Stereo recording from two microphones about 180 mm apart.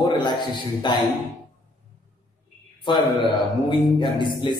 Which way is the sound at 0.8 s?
25° left (ahead or behind).